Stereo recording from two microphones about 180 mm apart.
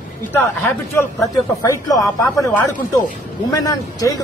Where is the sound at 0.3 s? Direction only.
10° left (ahead or behind).